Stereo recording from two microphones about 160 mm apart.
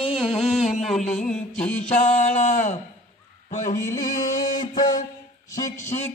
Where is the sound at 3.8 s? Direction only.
15° left (ahead or behind).